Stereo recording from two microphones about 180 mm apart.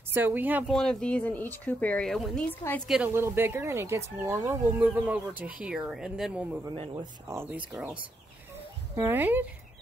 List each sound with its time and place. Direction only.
0.1 s speech: 10° right (ahead or behind)
0.7 s speech: 5° left (ahead or behind)
2.9 s speech: 10° right (ahead or behind)
6.7 s speech: 25° right (ahead or behind)
7.3 s speech: 10° right (ahead or behind)
8.9 s speech: 10° right (ahead or behind)